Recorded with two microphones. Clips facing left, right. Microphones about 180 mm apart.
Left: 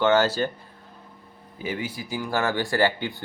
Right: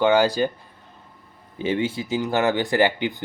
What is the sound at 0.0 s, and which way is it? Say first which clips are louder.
Speech: right 2 dB; 15° right (ahead or behind).